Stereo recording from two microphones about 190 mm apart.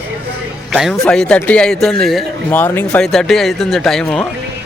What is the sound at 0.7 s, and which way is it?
A man's voice, centre (ahead or behind).